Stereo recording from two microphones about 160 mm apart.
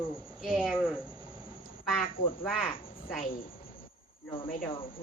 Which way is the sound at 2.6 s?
35° left (ahead or behind).